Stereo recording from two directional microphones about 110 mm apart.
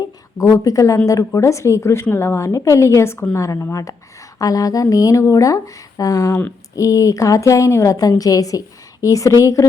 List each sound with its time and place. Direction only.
0.3 s speech: 30° left (ahead or behind)